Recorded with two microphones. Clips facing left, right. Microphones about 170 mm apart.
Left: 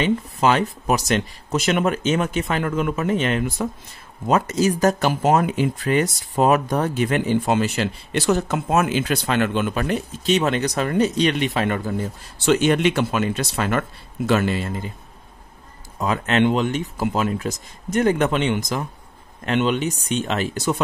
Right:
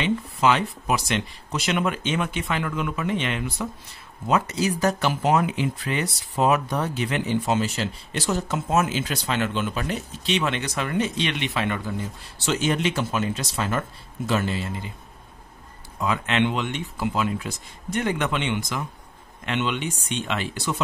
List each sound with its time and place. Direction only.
0.0 s speech: 45° left (ahead or behind)
16.0 s speech: 45° left (ahead or behind)